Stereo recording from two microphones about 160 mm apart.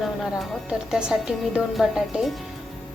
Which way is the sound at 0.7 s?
5° right (ahead or behind).